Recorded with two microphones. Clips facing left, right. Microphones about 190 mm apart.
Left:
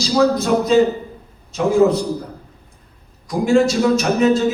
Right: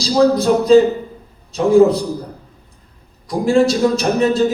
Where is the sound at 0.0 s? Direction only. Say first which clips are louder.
Right 3 dB; 35° right (ahead or behind).